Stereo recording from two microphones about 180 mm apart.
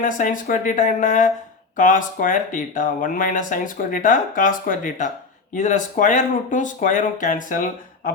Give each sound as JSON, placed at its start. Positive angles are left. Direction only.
{"t": 0.0, "sound": "speech", "side_deg": 50}